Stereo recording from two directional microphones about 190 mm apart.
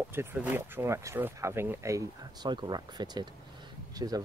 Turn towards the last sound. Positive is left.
turn(degrees=-20)  # may be behind; listen again after turning